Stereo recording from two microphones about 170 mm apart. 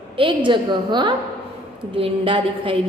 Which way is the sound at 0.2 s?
30° right (ahead or behind).